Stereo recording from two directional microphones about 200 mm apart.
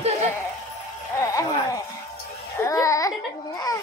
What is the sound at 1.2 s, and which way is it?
Speech, 15° left (ahead or behind).